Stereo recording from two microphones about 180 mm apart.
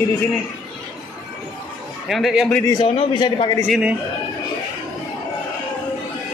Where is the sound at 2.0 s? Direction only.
Centre (ahead or behind).